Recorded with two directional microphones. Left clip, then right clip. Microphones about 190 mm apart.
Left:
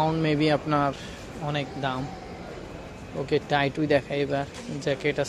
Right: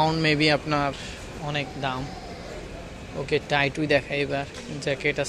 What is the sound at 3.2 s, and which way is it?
Speech, 15° left (ahead or behind).